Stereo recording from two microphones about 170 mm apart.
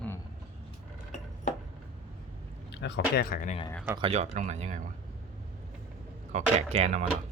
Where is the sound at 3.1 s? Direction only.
65° left (ahead or behind).